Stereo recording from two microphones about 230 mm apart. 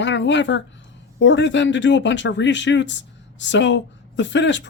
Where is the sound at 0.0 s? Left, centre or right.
Left.